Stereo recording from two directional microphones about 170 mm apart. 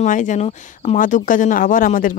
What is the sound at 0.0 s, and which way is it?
Speech, 50° left (ahead or behind).